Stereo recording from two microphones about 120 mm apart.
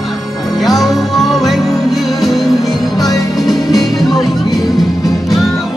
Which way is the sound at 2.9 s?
30° left (ahead or behind).